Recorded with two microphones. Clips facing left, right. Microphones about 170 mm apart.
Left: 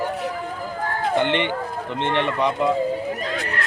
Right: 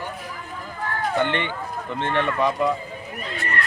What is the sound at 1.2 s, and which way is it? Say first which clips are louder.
A man's voice: left 3 dB; 20° left (ahead or behind).